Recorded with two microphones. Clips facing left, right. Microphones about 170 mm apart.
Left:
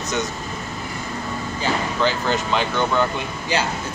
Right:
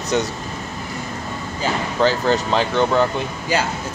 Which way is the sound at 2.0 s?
40° right (ahead or behind).